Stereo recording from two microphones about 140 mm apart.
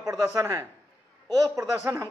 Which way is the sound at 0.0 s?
25° right (ahead or behind).